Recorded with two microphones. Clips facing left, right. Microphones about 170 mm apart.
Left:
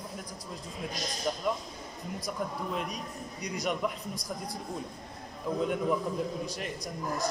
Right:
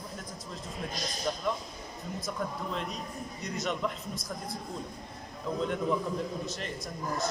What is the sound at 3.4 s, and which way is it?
Speech, 15° left (ahead or behind).